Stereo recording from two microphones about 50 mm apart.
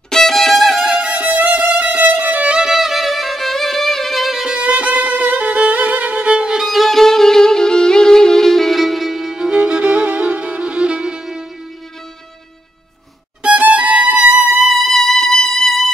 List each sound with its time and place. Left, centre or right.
0.1 s music: centre
1.0 s music: right
2.5 s music: centre
4.6 s violin: right
6.2 s violin: centre
6.6 s violin: centre
9.5 s music: right
13.6 s violin: right
14.7 s music: centre